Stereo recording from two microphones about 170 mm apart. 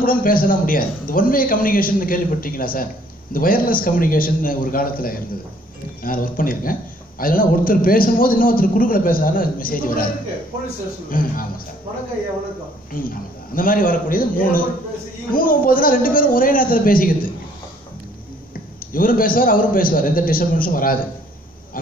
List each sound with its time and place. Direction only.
0.0 s a man's voice: 55° left (ahead or behind)
11.1 s a man's voice: 55° left (ahead or behind)
12.9 s a man's voice: 55° left (ahead or behind)
18.9 s a man's voice: 55° left (ahead or behind)